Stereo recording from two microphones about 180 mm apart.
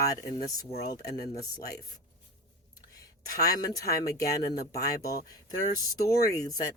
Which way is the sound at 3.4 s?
20° left (ahead or behind).